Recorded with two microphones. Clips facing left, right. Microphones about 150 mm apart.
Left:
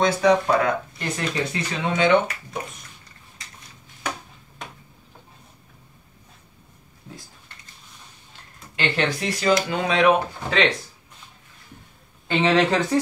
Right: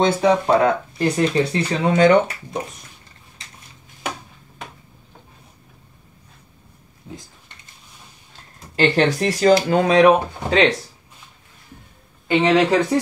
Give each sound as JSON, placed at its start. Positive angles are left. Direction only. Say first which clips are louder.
{"t": 0.0, "sound": "speech", "louder": "right 2 dB", "side_deg": -25}
{"t": 8.7, "sound": "speech", "louder": "right 7 dB", "side_deg": -40}
{"t": 12.3, "sound": "speech", "louder": "right 3 dB", "side_deg": -10}